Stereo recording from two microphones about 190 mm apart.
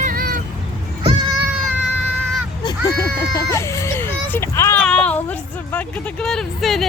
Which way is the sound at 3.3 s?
15° left (ahead or behind).